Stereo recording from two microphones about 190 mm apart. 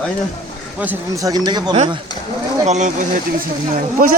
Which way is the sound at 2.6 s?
40° right (ahead or behind).